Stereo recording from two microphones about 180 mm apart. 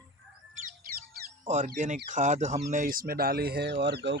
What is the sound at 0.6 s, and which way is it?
Chirp, 50° right (ahead or behind).